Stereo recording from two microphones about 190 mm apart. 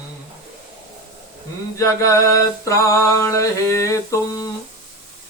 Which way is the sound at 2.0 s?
15° left (ahead or behind).